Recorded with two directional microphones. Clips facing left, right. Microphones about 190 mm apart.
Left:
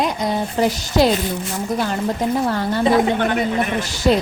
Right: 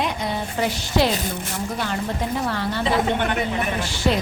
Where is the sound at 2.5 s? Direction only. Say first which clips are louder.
Left 6 dB; 45° left (ahead or behind).